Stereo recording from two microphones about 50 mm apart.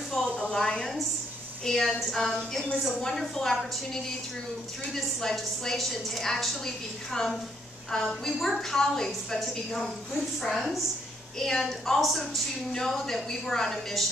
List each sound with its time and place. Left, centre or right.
0.4 s a woman's voice: centre
5.2 s a woman's voice: centre